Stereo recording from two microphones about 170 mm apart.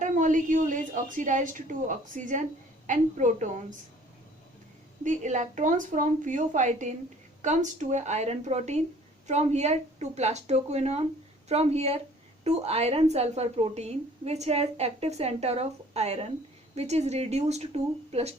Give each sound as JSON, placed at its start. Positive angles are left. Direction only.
{"t": 0.0, "sound": "a woman's voice", "side_deg": -50}
{"t": 5.0, "sound": "a woman's voice", "side_deg": -45}